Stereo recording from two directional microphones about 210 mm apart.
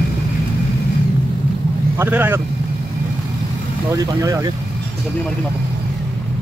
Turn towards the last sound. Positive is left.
turn(degrees=-15)  # may be behind; listen again after turning